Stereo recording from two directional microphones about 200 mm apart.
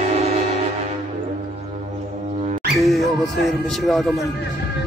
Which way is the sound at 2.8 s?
Centre (ahead or behind).